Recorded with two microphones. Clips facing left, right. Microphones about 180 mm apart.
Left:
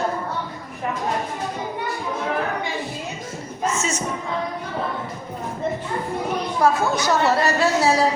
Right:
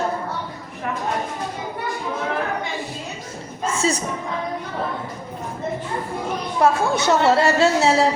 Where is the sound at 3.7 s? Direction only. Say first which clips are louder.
Right 4 dB; 35° right (ahead or behind).